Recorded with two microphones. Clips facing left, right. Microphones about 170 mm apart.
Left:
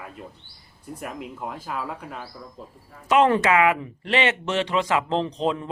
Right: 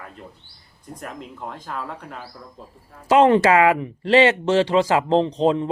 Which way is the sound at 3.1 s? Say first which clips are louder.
Right 4 dB; 25° right (ahead or behind).